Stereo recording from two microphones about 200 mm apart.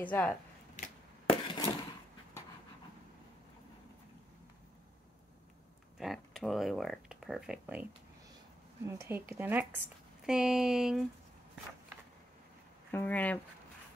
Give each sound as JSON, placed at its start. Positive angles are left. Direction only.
{"t": 0.0, "sound": "speech", "side_deg": 10}
{"t": 0.7, "sound": "a sound", "side_deg": 40}
{"t": 1.5, "sound": "a sound", "side_deg": 20}
{"t": 5.9, "sound": "speech", "side_deg": 0}
{"t": 8.8, "sound": "speech", "side_deg": -15}
{"t": 12.9, "sound": "speech", "side_deg": 10}